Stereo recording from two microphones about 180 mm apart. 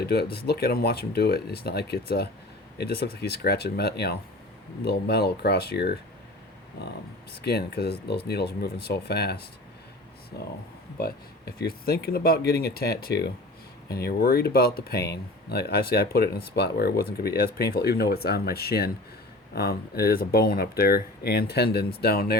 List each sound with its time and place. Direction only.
0.0 s speech: 60° left (ahead or behind)
7.4 s speech: 60° left (ahead or behind)
11.0 s speech: 60° left (ahead or behind)